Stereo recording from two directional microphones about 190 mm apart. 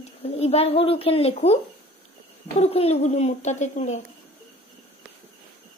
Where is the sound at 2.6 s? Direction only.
30° left (ahead or behind).